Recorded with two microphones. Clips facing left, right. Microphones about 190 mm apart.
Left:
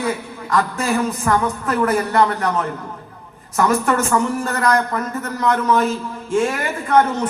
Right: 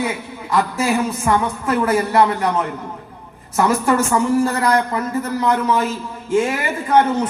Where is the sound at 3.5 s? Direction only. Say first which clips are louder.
Right 1 dB; 30° right (ahead or behind).